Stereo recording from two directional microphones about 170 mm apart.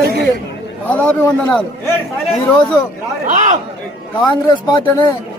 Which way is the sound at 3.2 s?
50° right (ahead or behind).